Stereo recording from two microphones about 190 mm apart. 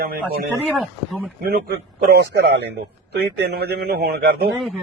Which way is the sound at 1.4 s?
55° right (ahead or behind).